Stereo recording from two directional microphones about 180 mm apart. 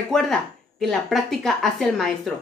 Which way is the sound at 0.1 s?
5° left (ahead or behind).